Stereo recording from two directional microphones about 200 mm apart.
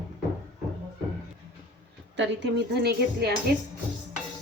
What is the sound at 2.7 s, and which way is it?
Speech, 55° right (ahead or behind).